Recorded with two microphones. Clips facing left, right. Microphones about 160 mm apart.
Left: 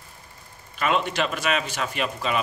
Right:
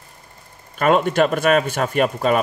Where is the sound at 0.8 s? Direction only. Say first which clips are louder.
Right 8 dB; 50° right (ahead or behind).